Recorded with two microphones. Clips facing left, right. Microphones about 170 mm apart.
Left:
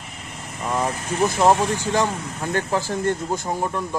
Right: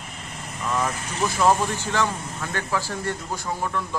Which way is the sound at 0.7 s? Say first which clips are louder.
Left 2 dB; 30° left (ahead or behind).